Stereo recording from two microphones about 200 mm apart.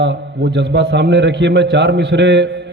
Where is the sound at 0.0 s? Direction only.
60° right (ahead or behind).